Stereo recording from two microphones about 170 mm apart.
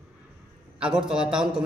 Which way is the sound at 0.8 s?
5° right (ahead or behind).